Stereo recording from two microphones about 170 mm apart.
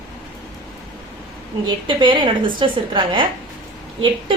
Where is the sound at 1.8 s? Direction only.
30° right (ahead or behind).